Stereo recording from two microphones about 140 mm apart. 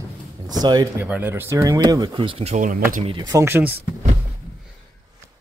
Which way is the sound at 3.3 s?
20° right (ahead or behind).